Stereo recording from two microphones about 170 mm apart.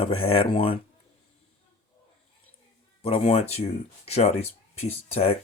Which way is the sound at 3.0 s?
35° left (ahead or behind).